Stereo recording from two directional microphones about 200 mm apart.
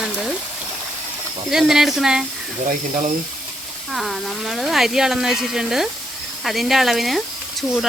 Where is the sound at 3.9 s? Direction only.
Centre (ahead or behind).